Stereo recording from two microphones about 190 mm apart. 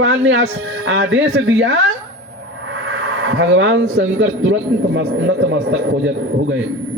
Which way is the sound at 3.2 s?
80° right.